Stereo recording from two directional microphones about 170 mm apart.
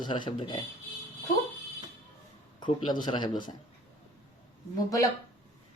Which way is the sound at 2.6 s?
25° left (ahead or behind).